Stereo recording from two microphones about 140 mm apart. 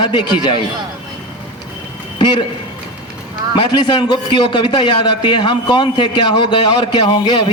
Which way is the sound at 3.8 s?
30° left (ahead or behind).